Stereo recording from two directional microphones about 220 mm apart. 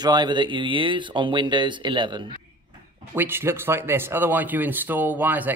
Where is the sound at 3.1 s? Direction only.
10° right (ahead or behind).